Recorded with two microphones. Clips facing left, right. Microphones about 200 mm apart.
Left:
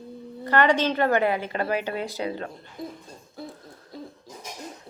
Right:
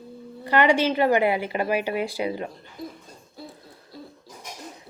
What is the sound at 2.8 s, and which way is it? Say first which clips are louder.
Hoot: left 1 dB; 25° left (ahead or behind).